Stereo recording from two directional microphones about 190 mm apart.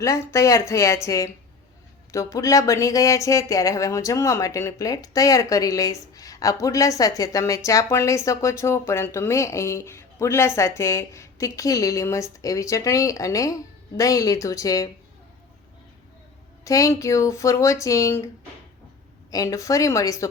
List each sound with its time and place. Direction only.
0.0 s speech: 15° left (ahead or behind)
16.6 s speech: 15° left (ahead or behind)
19.3 s speech: 15° left (ahead or behind)